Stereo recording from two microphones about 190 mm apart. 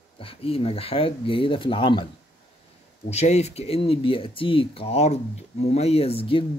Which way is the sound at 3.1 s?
35° left (ahead or behind).